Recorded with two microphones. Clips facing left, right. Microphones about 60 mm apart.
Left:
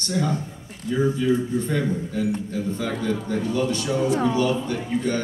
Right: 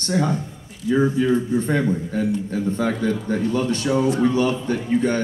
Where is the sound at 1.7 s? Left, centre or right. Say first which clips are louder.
Right 3 dB; right.